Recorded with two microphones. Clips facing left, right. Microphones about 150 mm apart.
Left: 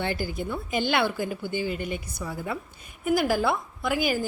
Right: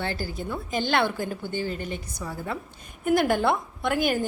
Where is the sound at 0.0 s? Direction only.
15° left (ahead or behind).